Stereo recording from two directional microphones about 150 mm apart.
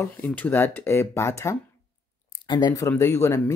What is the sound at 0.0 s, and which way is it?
Speech, 10° left (ahead or behind).